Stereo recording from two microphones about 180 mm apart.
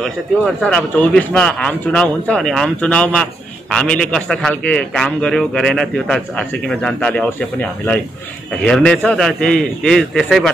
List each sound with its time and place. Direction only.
0.6 s a man's voice: 5° left (ahead or behind)